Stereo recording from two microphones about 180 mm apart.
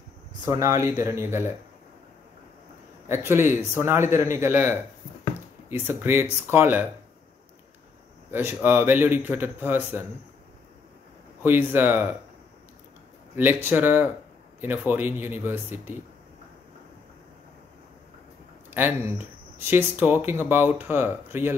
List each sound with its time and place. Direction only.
0.5 s speech: 15° right (ahead or behind)
3.1 s speech: 15° right (ahead or behind)
8.3 s speech: 10° right (ahead or behind)
11.4 s speech: 10° right (ahead or behind)
13.4 s speech: 10° right (ahead or behind)
18.7 s speech: 10° right (ahead or behind)